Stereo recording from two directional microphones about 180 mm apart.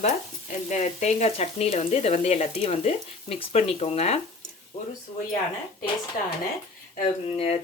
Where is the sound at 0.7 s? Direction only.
40° left (ahead or behind).